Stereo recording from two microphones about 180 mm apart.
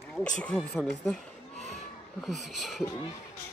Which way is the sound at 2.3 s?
Centre (ahead or behind).